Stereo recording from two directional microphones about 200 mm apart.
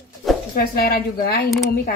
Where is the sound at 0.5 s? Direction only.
50° left (ahead or behind).